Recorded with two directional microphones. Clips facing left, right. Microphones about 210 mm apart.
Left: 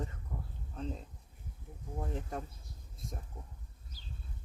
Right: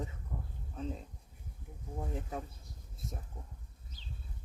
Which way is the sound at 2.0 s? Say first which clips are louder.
Even; centre (ahead or behind).